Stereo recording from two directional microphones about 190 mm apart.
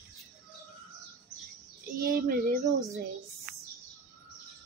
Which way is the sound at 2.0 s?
50° right (ahead or behind).